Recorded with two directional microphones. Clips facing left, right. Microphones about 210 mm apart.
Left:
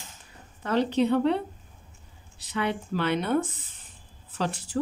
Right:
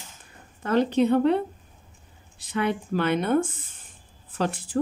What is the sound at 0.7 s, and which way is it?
A woman's voice, 50° right (ahead or behind).